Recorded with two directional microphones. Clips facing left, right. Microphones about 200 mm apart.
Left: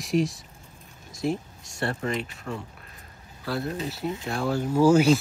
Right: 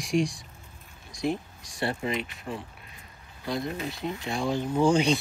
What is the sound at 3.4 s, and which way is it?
Speech, 15° right (ahead or behind).